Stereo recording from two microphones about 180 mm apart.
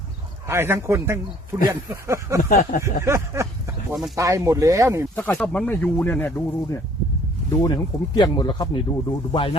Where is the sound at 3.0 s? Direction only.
15° right (ahead or behind).